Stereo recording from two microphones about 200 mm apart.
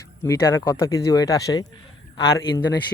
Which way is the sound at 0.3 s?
15° left (ahead or behind).